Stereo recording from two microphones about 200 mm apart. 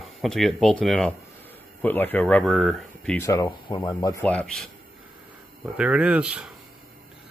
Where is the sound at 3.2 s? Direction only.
15° left (ahead or behind).